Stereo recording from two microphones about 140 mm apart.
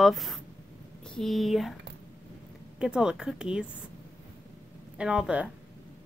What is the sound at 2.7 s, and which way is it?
Speech, 5° right (ahead or behind).